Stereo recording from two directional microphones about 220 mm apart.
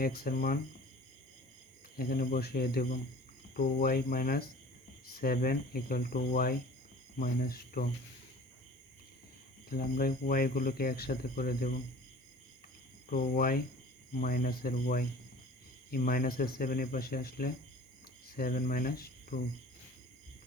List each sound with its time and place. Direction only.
0.0 s speech: 40° left (ahead or behind)
2.0 s speech: 40° left (ahead or behind)
9.6 s speech: 40° left (ahead or behind)
13.1 s speech: 40° left (ahead or behind)